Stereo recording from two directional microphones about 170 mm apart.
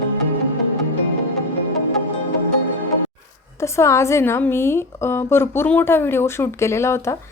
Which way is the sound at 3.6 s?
15° left (ahead or behind).